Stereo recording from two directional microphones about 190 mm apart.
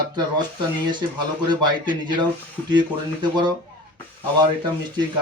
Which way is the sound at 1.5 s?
25° right (ahead or behind).